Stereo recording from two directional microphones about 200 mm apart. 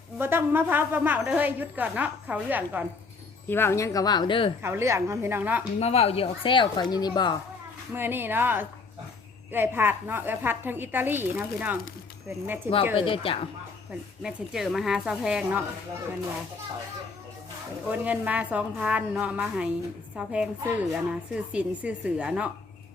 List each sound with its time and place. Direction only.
0.2 s speech: 10° right (ahead or behind)
3.5 s speech: 10° left (ahead or behind)
4.6 s speech: 15° right (ahead or behind)
5.8 s speech: 30° left (ahead or behind)
7.9 s speech: 10° right (ahead or behind)
13.0 s speech: 25° left (ahead or behind)
14.2 s a woman's voice: centre (ahead or behind)
17.8 s a woman's voice: 5° right (ahead or behind)